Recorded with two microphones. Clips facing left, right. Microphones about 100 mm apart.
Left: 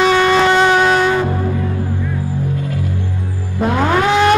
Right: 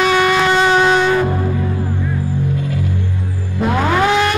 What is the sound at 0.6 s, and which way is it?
Music, centre (ahead or behind).